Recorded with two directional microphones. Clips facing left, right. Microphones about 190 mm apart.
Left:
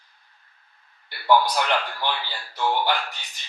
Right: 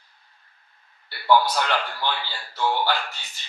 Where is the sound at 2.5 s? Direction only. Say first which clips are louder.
Even; 15° left (ahead or behind).